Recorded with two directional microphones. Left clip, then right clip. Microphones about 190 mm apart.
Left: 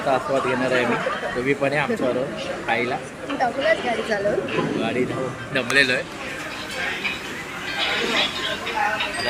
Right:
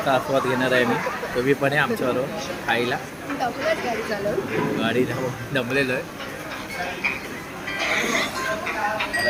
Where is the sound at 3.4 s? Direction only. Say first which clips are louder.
Left 3 dB; 20° left (ahead or behind).